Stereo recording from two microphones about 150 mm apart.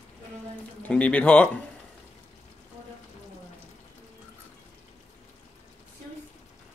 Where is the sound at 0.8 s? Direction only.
10° left (ahead or behind).